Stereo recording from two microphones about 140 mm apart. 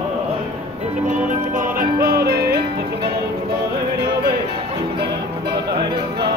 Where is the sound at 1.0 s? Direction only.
70° right (ahead or behind); by 2.5 s 90° right.